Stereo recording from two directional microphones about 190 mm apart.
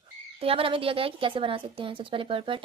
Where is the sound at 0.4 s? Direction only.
30° right (ahead or behind).